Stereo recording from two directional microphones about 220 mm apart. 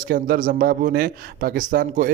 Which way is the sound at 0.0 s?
40° right (ahead or behind).